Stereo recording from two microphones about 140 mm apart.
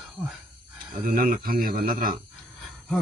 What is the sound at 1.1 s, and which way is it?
Speech, 90° right.